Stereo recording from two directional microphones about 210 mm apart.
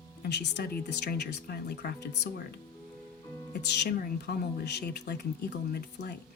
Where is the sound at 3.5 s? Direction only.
50° left (ahead or behind).